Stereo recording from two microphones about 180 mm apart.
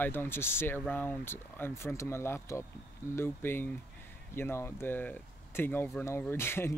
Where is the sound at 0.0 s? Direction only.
10° left (ahead or behind).